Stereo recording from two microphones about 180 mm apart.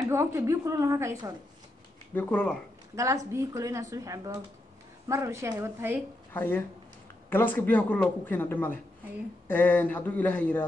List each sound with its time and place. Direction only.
0.1 s a woman's voice: 15° right (ahead or behind)
2.1 s speech: 5° left (ahead or behind)
3.0 s a woman's voice: 15° right (ahead or behind)
6.3 s speech: 10° left (ahead or behind)